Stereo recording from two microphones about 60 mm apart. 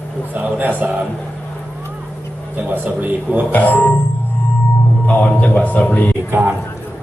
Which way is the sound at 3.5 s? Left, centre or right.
Left.